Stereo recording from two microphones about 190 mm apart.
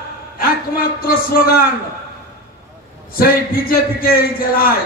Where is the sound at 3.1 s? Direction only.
50° left (ahead or behind).